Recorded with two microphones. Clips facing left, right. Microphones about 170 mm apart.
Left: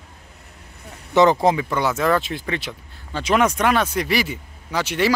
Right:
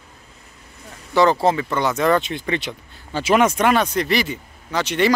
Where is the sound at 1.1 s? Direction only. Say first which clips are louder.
Left 1 dB; 20° left (ahead or behind).